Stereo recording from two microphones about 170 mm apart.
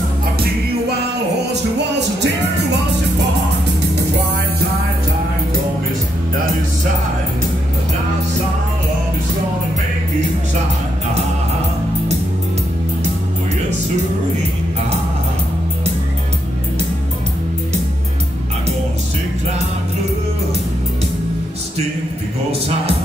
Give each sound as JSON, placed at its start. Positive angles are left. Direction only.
{"t": 1.5, "sound": "music", "side_deg": -90}